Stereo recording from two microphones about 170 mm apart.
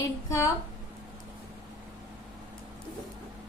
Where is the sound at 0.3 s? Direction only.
20° left (ahead or behind).